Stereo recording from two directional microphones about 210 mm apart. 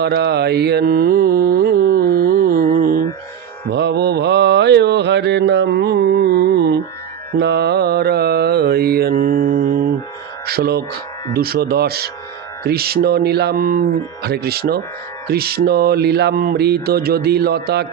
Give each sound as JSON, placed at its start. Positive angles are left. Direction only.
{"t": 0.0, "sound": "mantra", "side_deg": -50}
{"t": 10.4, "sound": "speech", "side_deg": -45}
{"t": 11.3, "sound": "music", "side_deg": -45}